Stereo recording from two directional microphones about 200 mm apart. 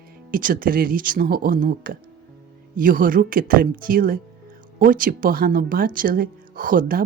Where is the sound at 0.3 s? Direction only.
45° right (ahead or behind).